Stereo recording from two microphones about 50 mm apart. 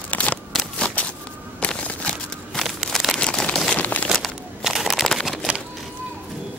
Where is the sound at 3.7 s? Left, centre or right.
Left.